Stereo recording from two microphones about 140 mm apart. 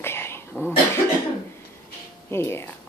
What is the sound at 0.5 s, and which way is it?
Speech, centre (ahead or behind).